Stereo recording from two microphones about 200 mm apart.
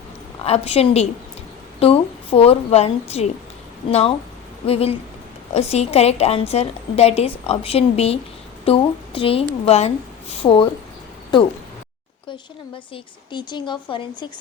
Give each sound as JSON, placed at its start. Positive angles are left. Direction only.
{"t": 0.4, "sound": "a woman's voice", "side_deg": 30}
{"t": 4.6, "sound": "a woman's voice", "side_deg": 30}
{"t": 12.7, "sound": "a woman's voice", "side_deg": 25}